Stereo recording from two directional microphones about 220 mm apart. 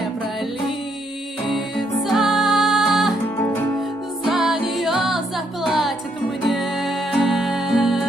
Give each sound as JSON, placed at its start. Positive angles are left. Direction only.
{"t": 1.5, "sound": "music", "side_deg": 0}
{"t": 4.3, "sound": "music", "side_deg": 0}